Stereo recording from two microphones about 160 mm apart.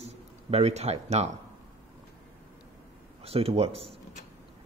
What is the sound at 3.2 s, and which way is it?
Speech, 40° right (ahead or behind).